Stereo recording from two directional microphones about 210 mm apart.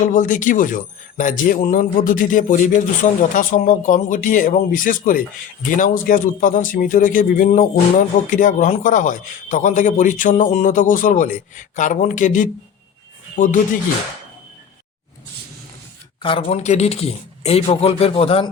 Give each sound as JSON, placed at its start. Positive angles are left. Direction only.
{"t": 0.0, "sound": "a man's voice", "side_deg": 40}
{"t": 16.2, "sound": "speech", "side_deg": 30}